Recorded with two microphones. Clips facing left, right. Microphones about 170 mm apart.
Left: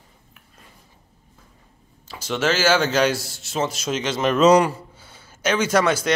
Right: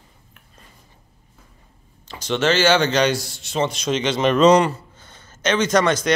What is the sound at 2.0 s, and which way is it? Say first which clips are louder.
Speech: right 2 dB; 5° left (ahead or behind).